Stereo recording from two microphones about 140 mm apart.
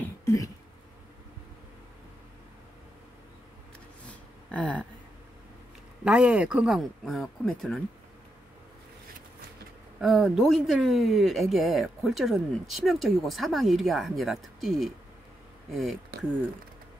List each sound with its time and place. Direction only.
0.0 s throat clearing: 20° left (ahead or behind)
4.1 s a sound: 10° left (ahead or behind)
6.0 s speech: 10° right (ahead or behind)
9.9 s speech: centre (ahead or behind)